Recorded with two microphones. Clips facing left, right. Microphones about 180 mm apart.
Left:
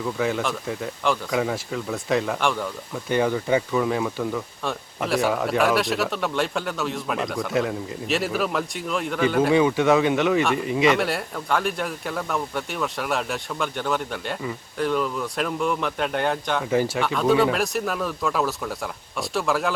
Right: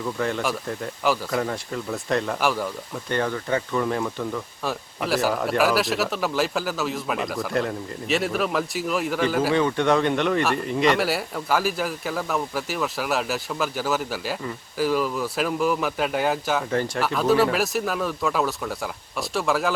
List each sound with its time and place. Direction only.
0.0 s speech: 5° left (ahead or behind)
3.1 s speech: 10° left (ahead or behind)
9.5 s speech: 10° left (ahead or behind)